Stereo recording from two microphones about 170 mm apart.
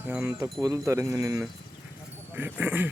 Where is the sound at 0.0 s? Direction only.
15° right (ahead or behind).